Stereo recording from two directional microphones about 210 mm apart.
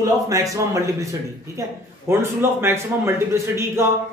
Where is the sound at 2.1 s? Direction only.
10° right (ahead or behind).